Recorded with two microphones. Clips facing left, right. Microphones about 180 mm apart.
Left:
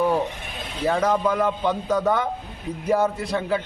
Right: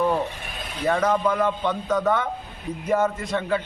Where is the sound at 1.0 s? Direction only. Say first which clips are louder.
Even; 10° left (ahead or behind).